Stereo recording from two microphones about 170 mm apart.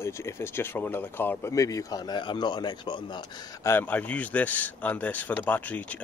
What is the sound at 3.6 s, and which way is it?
Speech, 10° left (ahead or behind).